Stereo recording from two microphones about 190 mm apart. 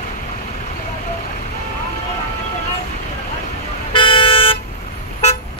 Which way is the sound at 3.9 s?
25° left (ahead or behind).